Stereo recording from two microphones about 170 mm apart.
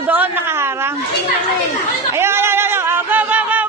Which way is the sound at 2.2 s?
15° right (ahead or behind).